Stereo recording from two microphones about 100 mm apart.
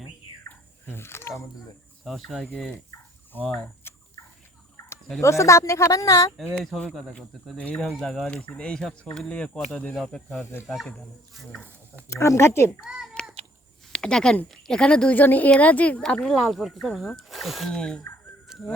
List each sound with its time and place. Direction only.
0.4 s a sound: 25° left (ahead or behind)
2.0 s speech: centre (ahead or behind)
3.9 s fowl: 20° left (ahead or behind)
5.2 s speech: 30° left (ahead or behind)
6.4 s speech: 5° left (ahead or behind)
7.6 s speech: 15° left (ahead or behind)
7.9 s speech: 5° left (ahead or behind)
10.4 s speech: 20° left (ahead or behind)
12.0 s speech: 30° left (ahead or behind)
13.2 s a sound: 10° left (ahead or behind)
13.9 s speech: 5° left (ahead or behind)
18.4 s dog: 5° right (ahead or behind)